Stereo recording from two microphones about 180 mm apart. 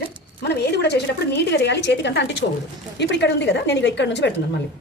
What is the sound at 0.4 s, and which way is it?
A woman's voice, 65° left (ahead or behind).